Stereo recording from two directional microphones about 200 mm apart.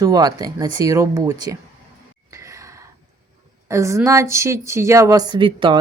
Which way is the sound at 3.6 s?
15° right (ahead or behind).